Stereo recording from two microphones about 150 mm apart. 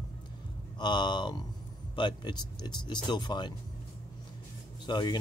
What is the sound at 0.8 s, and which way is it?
Speech, 30° left (ahead or behind).